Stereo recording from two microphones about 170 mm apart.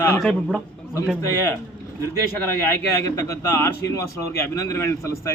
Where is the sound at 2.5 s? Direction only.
15° left (ahead or behind).